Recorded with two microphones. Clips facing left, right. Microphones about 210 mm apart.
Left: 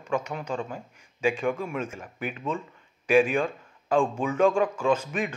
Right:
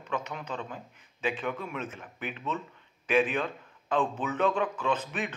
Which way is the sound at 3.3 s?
10° left (ahead or behind).